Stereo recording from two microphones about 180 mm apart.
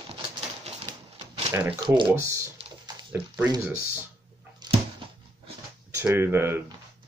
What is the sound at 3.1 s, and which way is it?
Speech, 5° right (ahead or behind).